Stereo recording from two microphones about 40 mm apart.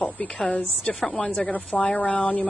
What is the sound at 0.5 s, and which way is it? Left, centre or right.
Speech, left.